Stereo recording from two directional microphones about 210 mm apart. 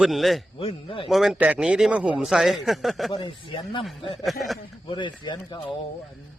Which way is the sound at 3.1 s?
25° left (ahead or behind).